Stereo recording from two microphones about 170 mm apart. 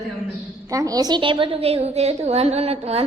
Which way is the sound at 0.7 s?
20° right (ahead or behind).